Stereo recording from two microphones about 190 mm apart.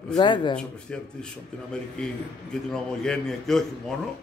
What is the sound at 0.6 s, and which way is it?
Speech, 5° left (ahead or behind).